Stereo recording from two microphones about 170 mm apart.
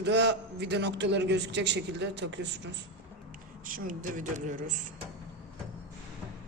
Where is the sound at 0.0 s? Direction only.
80° right.